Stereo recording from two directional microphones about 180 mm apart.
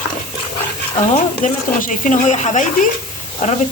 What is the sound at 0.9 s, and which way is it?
Speech, 40° left (ahead or behind).